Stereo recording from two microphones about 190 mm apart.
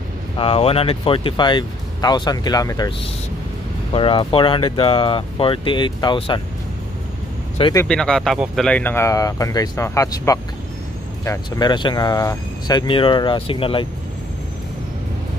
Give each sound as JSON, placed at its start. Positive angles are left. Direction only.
{"t": 0.4, "sound": "speech", "side_deg": 30}
{"t": 3.9, "sound": "speech", "side_deg": 25}
{"t": 7.7, "sound": "speech", "side_deg": 5}